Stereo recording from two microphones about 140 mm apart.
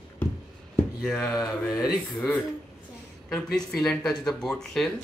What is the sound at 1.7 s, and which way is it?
Speech, centre (ahead or behind).